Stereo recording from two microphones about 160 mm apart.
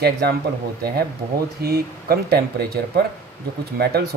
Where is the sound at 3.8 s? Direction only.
90° right.